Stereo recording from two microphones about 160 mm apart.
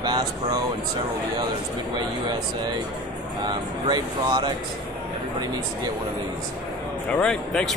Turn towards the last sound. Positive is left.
turn(degrees=5)  # may be behind; listen again after turning